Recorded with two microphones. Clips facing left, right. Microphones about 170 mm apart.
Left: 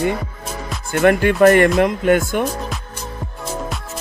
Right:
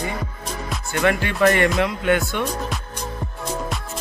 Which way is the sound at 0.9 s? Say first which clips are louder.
Left 7 dB; 50° left (ahead or behind).